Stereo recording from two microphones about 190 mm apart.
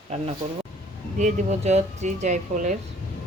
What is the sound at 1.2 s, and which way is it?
Speech, 40° right (ahead or behind).